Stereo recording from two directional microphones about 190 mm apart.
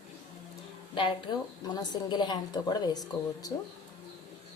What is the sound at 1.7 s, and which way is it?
A woman's voice, 20° left (ahead or behind).